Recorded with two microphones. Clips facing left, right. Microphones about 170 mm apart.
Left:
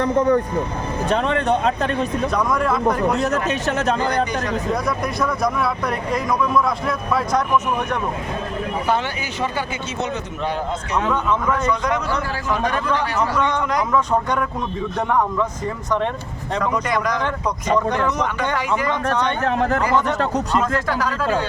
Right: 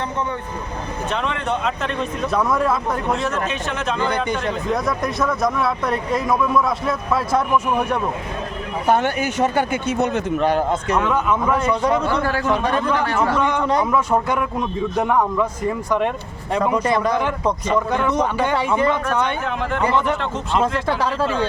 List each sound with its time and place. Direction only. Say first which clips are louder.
0.0 s speech: left 8 dB; 40° left (ahead or behind)
2.3 s speech: right 4 dB; 5° right (ahead or behind)
3.2 s speech: left 3 dB; 40° left (ahead or behind)
4.7 s speech: right 1 dB; centre (ahead or behind)
8.9 s a man's voice: right 7 dB; 50° right (ahead or behind)
11.1 s a man's voice: right 1 dB; 10° right (ahead or behind)
13.4 s a man's voice: right 2 dB; 10° right (ahead or behind)
16.7 s speech: right 3 dB; 30° right (ahead or behind)
17.8 s a man's voice: even; 5° right (ahead or behind)
18.1 s a man's voice: right 3 dB; 30° right (ahead or behind)
19.4 s speech: left 3 dB; 40° left (ahead or behind)
20.6 s speech: right 5 dB; 30° right (ahead or behind)